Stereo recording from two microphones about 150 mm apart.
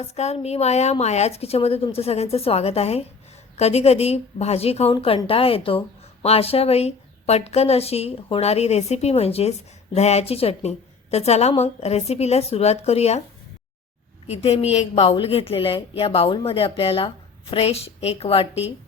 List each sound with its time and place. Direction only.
0.0 s a woman's voice: 45° left (ahead or behind)
14.3 s a woman's voice: 45° left (ahead or behind)